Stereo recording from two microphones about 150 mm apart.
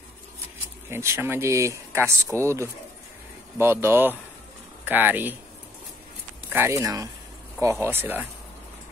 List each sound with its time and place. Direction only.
0.8 s speech: 15° right (ahead or behind)
6.5 s speech: 15° right (ahead or behind)